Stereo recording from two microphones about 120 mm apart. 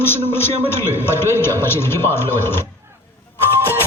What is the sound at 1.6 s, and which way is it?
Speech, 20° left (ahead or behind).